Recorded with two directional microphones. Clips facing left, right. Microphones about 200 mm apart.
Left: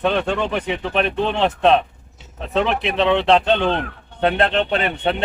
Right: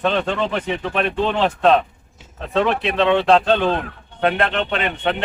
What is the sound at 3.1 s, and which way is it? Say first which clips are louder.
Speech: right 1 dB; 5° right (ahead or behind).